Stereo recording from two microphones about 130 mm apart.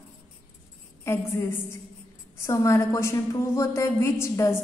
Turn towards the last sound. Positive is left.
turn(degrees=20)  # may be behind; listen again after turning